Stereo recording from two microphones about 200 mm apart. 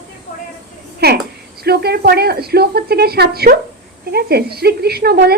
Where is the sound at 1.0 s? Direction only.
55° right (ahead or behind).